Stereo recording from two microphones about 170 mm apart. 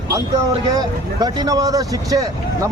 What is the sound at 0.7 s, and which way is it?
Speech, 20° right (ahead or behind).